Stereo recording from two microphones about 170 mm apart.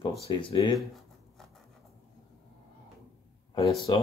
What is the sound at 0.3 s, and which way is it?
Speech, 30° left (ahead or behind).